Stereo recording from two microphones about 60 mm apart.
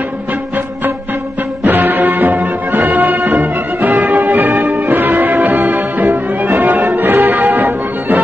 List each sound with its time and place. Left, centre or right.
1.6 s music: right